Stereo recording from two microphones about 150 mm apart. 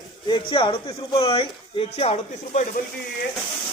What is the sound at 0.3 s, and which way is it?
Speech, 35° left (ahead or behind).